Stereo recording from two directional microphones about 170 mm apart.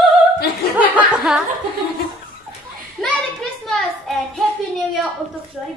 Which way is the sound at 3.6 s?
Centre (ahead or behind).